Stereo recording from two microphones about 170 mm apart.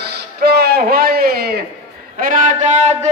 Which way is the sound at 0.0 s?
70° right (ahead or behind).